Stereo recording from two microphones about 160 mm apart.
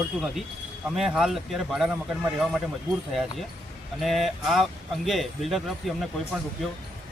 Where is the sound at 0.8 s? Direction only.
5° right (ahead or behind).